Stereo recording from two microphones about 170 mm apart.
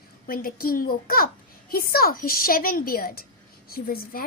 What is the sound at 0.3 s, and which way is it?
A child's voice, 60° left (ahead or behind).